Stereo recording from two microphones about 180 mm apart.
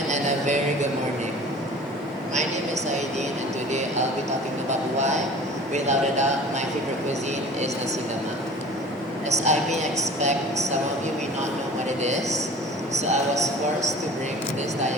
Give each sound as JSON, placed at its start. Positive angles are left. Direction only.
{"t": 0.1, "sound": "music", "side_deg": -40}
{"t": 3.7, "sound": "a man's voice", "side_deg": -40}
{"t": 9.4, "sound": "a man's voice", "side_deg": -40}
{"t": 11.9, "sound": "a man's voice", "side_deg": -40}